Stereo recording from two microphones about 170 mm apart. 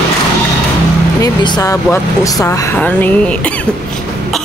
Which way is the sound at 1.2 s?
25° left (ahead or behind).